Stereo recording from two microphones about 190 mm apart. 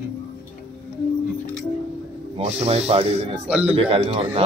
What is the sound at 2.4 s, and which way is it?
Speech, 35° right (ahead or behind).